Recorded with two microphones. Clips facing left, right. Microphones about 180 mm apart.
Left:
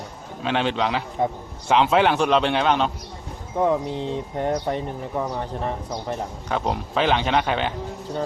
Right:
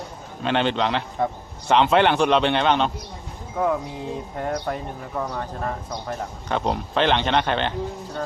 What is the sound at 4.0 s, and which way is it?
Speech, 25° left (ahead or behind).